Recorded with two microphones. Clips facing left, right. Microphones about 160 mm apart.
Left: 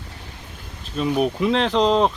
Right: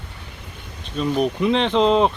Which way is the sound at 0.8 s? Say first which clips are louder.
Even; 5° left (ahead or behind).